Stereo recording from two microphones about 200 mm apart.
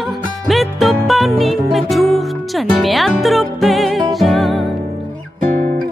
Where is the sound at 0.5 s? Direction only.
Centre (ahead or behind).